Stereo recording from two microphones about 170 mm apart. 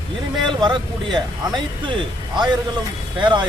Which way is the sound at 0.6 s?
25° right (ahead or behind).